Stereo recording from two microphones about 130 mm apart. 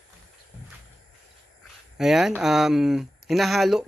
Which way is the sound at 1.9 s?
5° right (ahead or behind).